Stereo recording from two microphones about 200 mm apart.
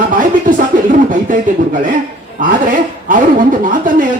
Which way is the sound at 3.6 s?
40° right (ahead or behind).